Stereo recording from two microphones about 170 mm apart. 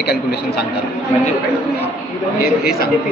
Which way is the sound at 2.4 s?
60° left (ahead or behind).